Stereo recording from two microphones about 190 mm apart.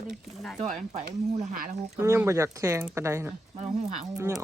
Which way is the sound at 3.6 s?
35° right (ahead or behind).